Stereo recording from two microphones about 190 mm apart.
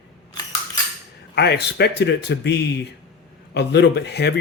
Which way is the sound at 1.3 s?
60° left (ahead or behind).